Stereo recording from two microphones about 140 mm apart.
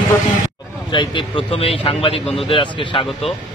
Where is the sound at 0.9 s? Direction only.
35° left (ahead or behind).